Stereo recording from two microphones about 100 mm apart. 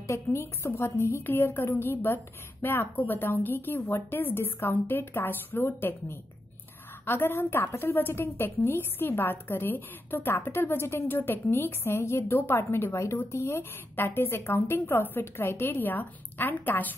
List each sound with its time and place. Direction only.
0.0 s a woman's voice: 30° left (ahead or behind)